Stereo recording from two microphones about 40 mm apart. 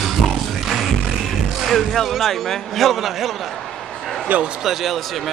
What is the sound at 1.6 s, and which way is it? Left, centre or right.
Speech, centre.